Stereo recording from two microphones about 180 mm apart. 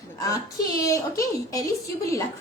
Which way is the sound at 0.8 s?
20° left (ahead or behind).